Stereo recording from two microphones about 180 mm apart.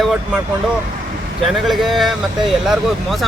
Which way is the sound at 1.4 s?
Centre (ahead or behind).